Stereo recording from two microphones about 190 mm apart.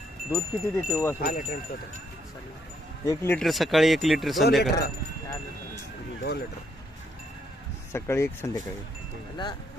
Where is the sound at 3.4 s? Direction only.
Centre (ahead or behind).